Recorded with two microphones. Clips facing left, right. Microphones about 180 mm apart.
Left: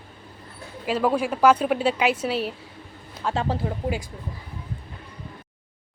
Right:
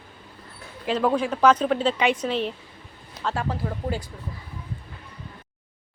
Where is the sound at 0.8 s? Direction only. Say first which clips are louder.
Even; 5° left (ahead or behind).